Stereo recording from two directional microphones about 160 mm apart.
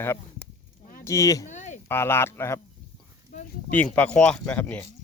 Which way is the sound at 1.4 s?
50° left (ahead or behind).